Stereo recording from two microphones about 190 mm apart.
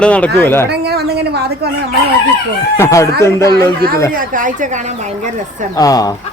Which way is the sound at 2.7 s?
15° left (ahead or behind).